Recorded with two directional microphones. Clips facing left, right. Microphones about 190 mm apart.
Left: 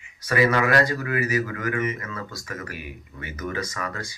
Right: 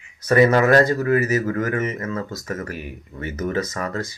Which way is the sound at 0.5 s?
40° right (ahead or behind).